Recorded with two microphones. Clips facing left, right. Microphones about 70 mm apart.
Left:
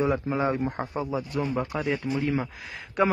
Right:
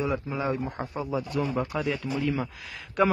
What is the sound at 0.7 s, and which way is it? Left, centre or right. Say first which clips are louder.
Speech: left 1 dB; left.